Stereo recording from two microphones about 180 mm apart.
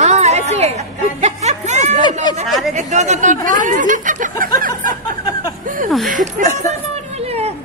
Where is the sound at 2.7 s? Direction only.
40° right (ahead or behind).